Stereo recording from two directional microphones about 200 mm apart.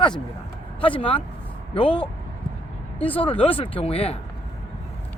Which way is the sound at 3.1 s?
25° left (ahead or behind).